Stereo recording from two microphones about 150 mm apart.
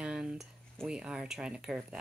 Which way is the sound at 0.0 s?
5° right (ahead or behind).